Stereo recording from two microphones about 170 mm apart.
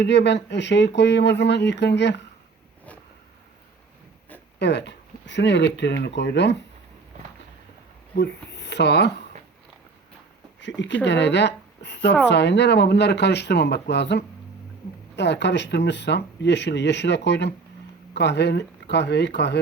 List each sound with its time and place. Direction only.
0.0 s speech: 90° left
4.6 s speech: 90° left
8.1 s speech: 85° left
10.6 s speech: 90° left